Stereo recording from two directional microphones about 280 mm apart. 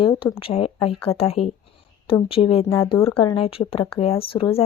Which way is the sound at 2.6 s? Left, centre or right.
Centre.